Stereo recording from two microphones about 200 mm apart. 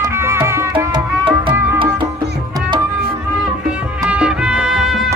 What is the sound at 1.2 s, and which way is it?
Music, 25° right (ahead or behind).